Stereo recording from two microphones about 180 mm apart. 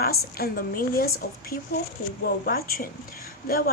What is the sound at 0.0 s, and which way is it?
A woman's voice, 55° left (ahead or behind).